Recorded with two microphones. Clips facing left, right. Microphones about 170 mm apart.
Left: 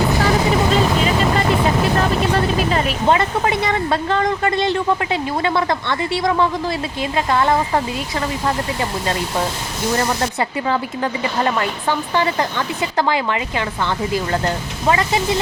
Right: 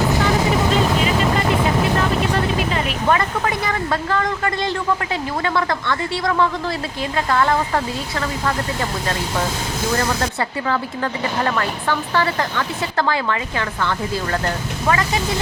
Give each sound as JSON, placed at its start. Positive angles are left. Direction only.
{"t": 3.1, "sound": "speech", "side_deg": 25}
{"t": 10.7, "sound": "speech", "side_deg": 20}